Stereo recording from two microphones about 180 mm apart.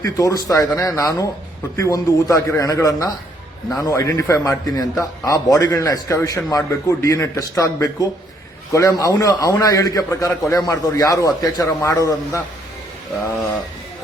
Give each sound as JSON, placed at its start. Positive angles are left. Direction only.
{"t": 0.0, "sound": "a man's voice", "side_deg": 20}